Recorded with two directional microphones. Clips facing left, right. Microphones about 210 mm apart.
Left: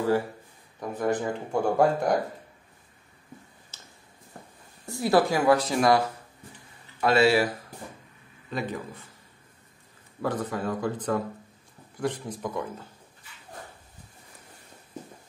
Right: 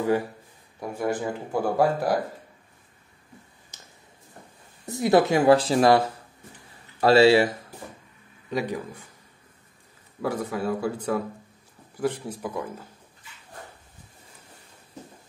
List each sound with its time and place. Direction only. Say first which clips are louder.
0.7 s speech: even; 10° right (ahead or behind)
3.7 s a sound: right 1 dB; 15° right (ahead or behind)
4.8 s speech: right 3 dB; 20° right (ahead or behind)
7.0 s speech: right 5 dB; 30° right (ahead or behind)
8.5 s speech: right 4 dB; 15° right (ahead or behind)
10.2 s speech: right 2 dB; 10° right (ahead or behind)